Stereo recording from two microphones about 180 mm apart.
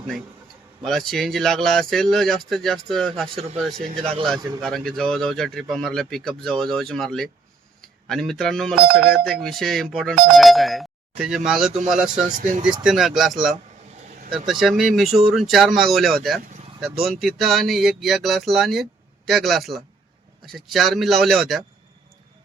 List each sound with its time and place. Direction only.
0.8 s speech: centre (ahead or behind)
3.9 s a man's voice: 30° right (ahead or behind)
4.6 s speech: centre (ahead or behind)
12.3 s speech: 45° right (ahead or behind)
12.8 s speech: centre (ahead or behind)